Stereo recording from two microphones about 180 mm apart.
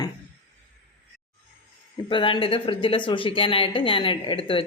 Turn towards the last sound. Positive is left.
turn(degrees=30)  # may be behind; listen again after turning